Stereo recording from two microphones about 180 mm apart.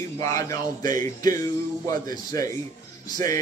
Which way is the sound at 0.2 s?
15° left (ahead or behind).